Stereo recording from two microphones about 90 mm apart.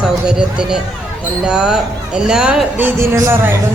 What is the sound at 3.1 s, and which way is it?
Speech, 30° right (ahead or behind).